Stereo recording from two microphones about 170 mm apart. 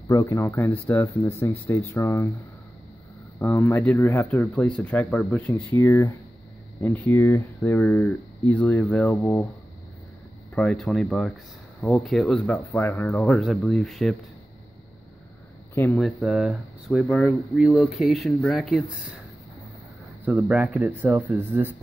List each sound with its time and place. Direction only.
0.1 s speech: 20° left (ahead or behind)
3.3 s speech: 15° left (ahead or behind)
10.5 s speech: 5° left (ahead or behind)
13.2 s speech: centre (ahead or behind)
15.7 s speech: 10° left (ahead or behind)
16.0 s speech: centre (ahead or behind)
20.2 s speech: 10° right (ahead or behind)